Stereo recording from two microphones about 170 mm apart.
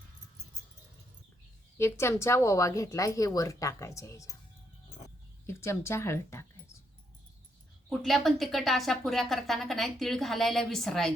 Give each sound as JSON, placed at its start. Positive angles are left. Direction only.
{"t": 1.8, "sound": "speech", "side_deg": 15}
{"t": 5.5, "sound": "speech", "side_deg": 15}
{"t": 7.9, "sound": "speech", "side_deg": 0}